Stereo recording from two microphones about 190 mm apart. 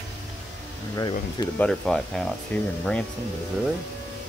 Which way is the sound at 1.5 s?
5° left (ahead or behind).